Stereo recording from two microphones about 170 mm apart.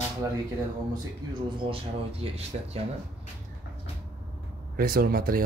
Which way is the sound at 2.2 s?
35° right (ahead or behind).